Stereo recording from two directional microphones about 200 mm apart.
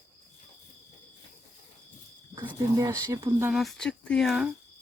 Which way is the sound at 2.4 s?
20° right (ahead or behind).